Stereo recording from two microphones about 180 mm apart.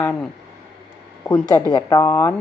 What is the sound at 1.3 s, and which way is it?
Speech, 20° left (ahead or behind).